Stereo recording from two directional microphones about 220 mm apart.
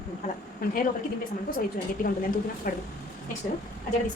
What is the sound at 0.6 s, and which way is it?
Speech, 45° left (ahead or behind).